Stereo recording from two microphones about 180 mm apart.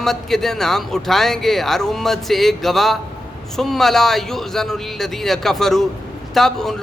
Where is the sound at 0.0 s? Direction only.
Centre (ahead or behind).